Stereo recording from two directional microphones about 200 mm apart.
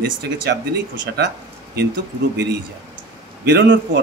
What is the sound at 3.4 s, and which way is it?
Speech, 60° right (ahead or behind).